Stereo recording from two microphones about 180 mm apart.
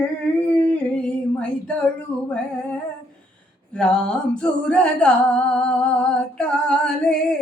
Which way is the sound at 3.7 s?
5° left (ahead or behind).